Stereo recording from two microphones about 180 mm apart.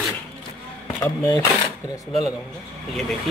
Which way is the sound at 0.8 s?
20° left (ahead or behind).